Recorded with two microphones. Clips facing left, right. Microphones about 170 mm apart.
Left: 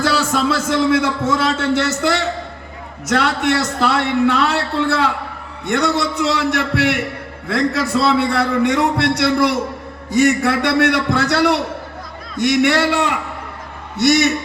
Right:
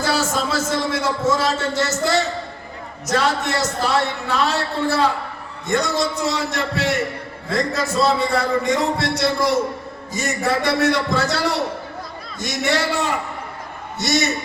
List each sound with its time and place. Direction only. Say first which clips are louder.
0.0 s a man's voice: left 4 dB; 60° left (ahead or behind)